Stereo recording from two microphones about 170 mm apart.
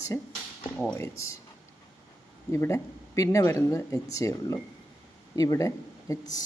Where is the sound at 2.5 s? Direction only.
15° left (ahead or behind).